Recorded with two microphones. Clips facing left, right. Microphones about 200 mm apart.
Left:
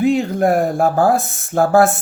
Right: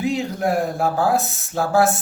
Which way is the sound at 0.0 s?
55° left (ahead or behind).